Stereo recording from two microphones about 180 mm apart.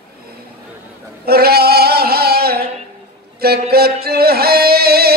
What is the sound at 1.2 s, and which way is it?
Female singing, 60° right (ahead or behind).